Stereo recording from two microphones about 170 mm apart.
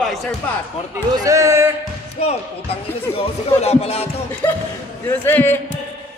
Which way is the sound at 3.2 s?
35° left (ahead or behind).